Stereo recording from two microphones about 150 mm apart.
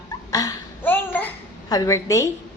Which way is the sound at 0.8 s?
10° left (ahead or behind).